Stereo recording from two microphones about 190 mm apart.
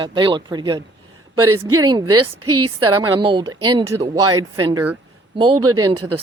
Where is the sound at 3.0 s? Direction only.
25° right (ahead or behind).